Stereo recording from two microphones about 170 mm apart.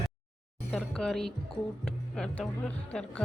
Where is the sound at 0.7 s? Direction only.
5° left (ahead or behind).